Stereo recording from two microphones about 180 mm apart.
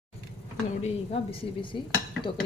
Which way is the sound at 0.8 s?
30° left (ahead or behind).